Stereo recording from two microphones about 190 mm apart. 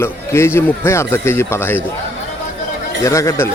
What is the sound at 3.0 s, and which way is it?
Speech, 15° left (ahead or behind).